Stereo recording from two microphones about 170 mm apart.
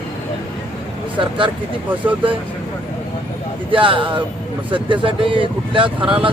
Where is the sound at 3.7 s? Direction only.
30° right (ahead or behind).